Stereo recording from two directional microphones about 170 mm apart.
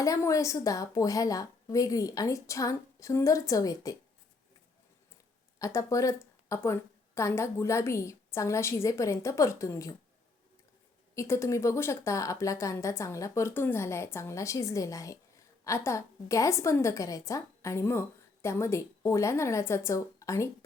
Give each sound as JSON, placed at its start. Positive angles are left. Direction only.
{"t": 0.0, "sound": "a woman's voice", "side_deg": 20}
{"t": 5.5, "sound": "a woman's voice", "side_deg": 20}
{"t": 11.1, "sound": "speech", "side_deg": 15}